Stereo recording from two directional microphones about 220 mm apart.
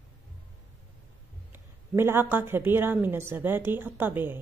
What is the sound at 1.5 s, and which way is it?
Speech, 10° right (ahead or behind).